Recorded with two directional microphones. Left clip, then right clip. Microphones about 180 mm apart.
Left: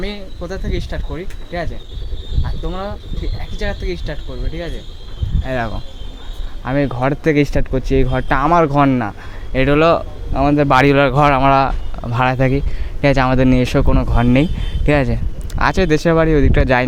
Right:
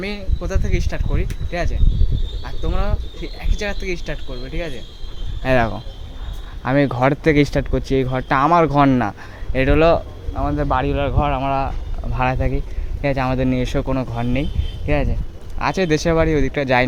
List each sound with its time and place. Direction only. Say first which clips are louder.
0.0 s speech: left 1 dB; 10° right (ahead or behind)
6.7 s speech: right 1 dB; 10° right (ahead or behind)
9.5 s speech: left 2 dB; 10° left (ahead or behind)
10.3 s speech: left 8 dB; 50° left (ahead or behind); by 16.8 s 20° left (ahead or behind)